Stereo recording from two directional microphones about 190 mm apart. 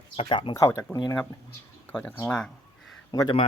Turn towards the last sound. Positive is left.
turn(degrees=25)  # may be behind; listen again after turning